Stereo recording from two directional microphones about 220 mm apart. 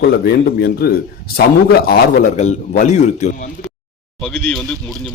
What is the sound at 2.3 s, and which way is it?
A man's voice, 30° left (ahead or behind).